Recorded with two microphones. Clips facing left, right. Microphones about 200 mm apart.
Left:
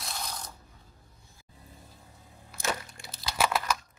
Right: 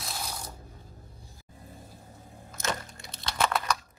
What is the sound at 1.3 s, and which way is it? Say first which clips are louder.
Vehicle: right 4 dB; 45° right (ahead or behind).